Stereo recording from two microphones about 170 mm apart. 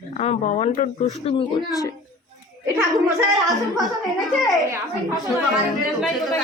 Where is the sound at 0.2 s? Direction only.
40° left (ahead or behind).